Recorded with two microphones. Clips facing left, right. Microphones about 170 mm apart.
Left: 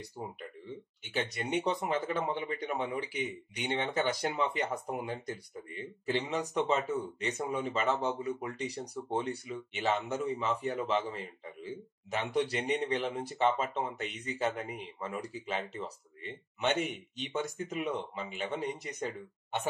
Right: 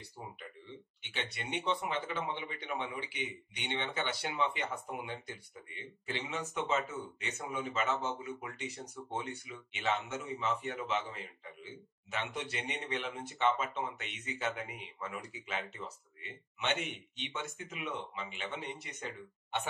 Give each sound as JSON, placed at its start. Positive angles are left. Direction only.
{"t": 1.0, "sound": "speech", "side_deg": 40}